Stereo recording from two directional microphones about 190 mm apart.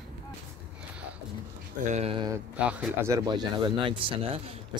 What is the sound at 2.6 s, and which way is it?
Speech, 5° right (ahead or behind).